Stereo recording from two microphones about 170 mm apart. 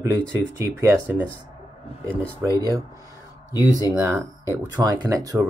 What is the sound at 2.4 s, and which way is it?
Speech, 15° right (ahead or behind).